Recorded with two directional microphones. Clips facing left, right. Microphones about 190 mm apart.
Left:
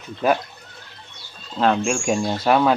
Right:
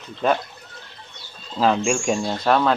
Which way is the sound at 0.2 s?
5° left (ahead or behind).